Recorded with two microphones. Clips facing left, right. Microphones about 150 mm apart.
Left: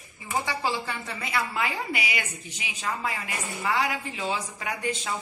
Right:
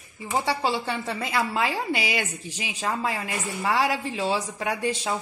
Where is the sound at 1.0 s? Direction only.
35° right (ahead or behind).